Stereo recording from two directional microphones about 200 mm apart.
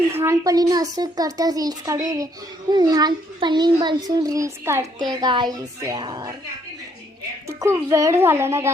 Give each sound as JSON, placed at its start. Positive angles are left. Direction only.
{"t": 0.1, "sound": "a woman's voice", "side_deg": -10}
{"t": 7.4, "sound": "speech", "side_deg": -15}